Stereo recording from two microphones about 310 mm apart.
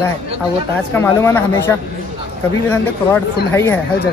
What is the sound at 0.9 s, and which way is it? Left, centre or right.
Speech, centre.